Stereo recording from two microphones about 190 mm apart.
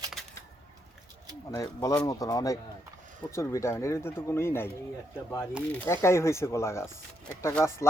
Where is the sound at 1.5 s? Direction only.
15° left (ahead or behind).